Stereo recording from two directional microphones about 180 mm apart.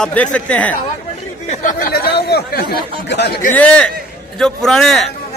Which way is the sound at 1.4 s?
40° left (ahead or behind).